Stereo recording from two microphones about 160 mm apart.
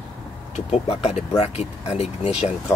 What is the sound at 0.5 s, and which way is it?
Speech, 40° left (ahead or behind).